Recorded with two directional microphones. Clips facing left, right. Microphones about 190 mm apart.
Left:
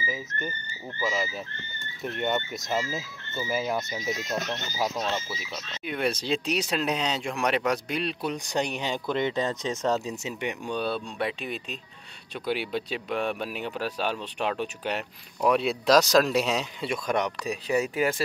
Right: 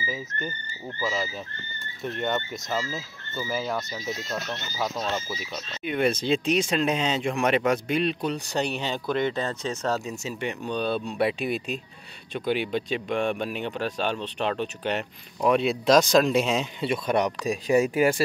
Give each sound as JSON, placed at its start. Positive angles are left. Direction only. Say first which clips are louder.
{"t": 2.1, "sound": "speech", "louder": "even", "side_deg": 10}
{"t": 4.9, "sound": "speech", "louder": "right 1 dB", "side_deg": -5}
{"t": 8.3, "sound": "speech", "louder": "right 1 dB", "side_deg": 15}
{"t": 11.1, "sound": "speech", "louder": "right 6 dB", "side_deg": -10}
{"t": 12.4, "sound": "speech", "louder": "right 3 dB", "side_deg": 5}
{"t": 17.5, "sound": "speech", "louder": "right 7 dB", "side_deg": -45}